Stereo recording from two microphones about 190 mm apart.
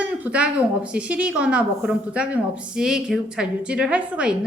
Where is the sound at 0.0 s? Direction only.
5° right (ahead or behind).